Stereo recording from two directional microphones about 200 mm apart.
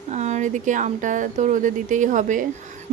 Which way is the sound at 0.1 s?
35° right (ahead or behind).